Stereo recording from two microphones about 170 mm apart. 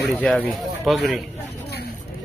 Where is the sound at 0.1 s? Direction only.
5° left (ahead or behind).